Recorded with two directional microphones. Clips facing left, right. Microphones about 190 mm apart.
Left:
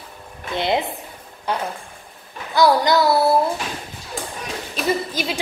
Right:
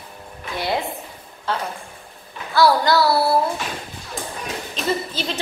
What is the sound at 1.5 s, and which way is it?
Speech, 15° left (ahead or behind).